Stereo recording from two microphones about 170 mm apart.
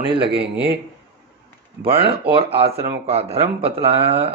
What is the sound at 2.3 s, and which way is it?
Speech, 35° right (ahead or behind).